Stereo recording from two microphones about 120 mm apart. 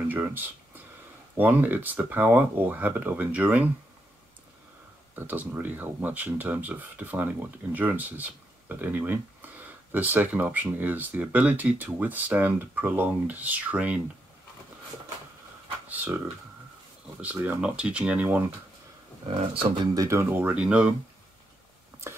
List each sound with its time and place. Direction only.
0.1 s a sound: 15° right (ahead or behind)
1.3 s speech: 15° right (ahead or behind)
5.1 s speech: 15° right (ahead or behind)
15.9 s speech: 15° right (ahead or behind)
17.2 s speech: 15° right (ahead or behind)
19.2 s speech: 45° right (ahead or behind)
19.9 s speech: 25° right (ahead or behind); by 20.9 s 5° right (ahead or behind)